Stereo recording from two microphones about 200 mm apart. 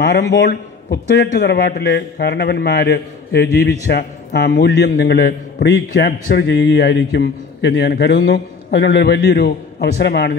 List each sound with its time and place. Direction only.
0.0 s a man's voice: 55° left (ahead or behind)